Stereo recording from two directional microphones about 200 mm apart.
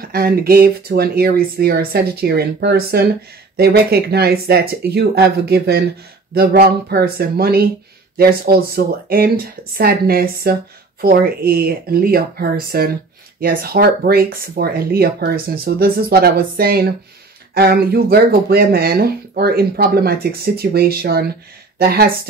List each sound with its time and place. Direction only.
0.0 s speech: 45° right (ahead or behind)